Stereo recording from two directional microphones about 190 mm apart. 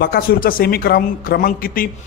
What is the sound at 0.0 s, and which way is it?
Speech, 50° left (ahead or behind).